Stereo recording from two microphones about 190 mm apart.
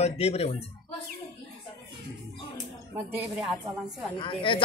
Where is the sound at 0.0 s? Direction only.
35° left (ahead or behind).